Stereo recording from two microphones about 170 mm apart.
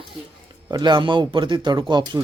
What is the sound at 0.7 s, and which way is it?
A woman's voice, 25° right (ahead or behind).